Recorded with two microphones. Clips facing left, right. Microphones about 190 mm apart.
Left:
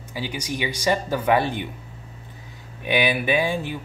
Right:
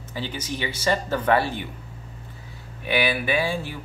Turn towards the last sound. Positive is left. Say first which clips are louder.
# left 2 dB
turn(degrees=20)  # may be behind; listen again after turning